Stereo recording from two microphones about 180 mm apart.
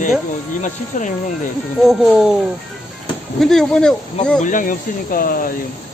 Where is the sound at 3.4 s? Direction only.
Centre (ahead or behind).